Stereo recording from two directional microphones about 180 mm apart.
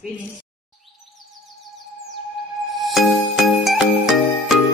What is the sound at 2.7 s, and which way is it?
Music, centre (ahead or behind).